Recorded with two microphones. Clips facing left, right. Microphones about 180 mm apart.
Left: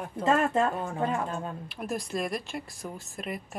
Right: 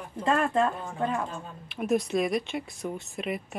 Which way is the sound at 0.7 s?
60° left (ahead or behind).